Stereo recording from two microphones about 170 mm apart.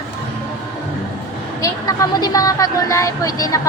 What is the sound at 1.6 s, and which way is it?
Speech, 20° left (ahead or behind).